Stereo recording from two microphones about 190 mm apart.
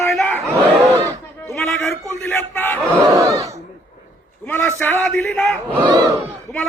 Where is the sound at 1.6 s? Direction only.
10° left (ahead or behind).